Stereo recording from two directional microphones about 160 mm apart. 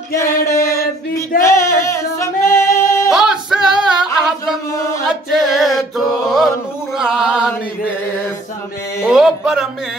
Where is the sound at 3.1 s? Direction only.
5° right (ahead or behind).